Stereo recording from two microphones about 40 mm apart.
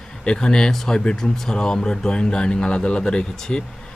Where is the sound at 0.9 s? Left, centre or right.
Left.